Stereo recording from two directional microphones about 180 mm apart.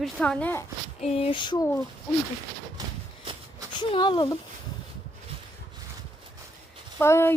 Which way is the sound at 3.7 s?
25° left (ahead or behind).